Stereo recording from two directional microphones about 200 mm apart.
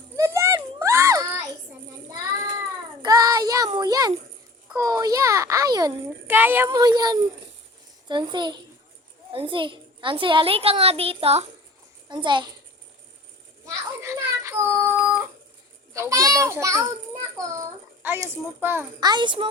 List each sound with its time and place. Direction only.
0.2 s a sound: 15° right (ahead or behind)
3.0 s child singing: 20° right (ahead or behind)
4.8 s a child's voice: 15° right (ahead or behind)
6.7 s a child's voice: 20° right (ahead or behind)
13.7 s child singing: 15° right (ahead or behind)
15.9 s a child's voice: 15° right (ahead or behind)